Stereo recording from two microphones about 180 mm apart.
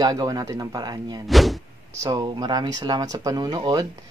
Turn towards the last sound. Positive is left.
turn(degrees=-25)  # may be behind; listen again after turning